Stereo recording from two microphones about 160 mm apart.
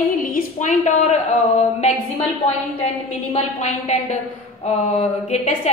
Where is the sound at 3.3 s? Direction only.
45° left (ahead or behind).